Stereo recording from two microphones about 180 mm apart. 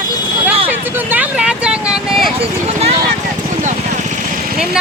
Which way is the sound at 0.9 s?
10° right (ahead or behind).